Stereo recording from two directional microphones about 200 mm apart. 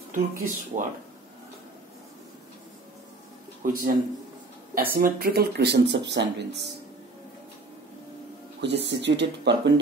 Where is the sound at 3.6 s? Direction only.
45° right (ahead or behind).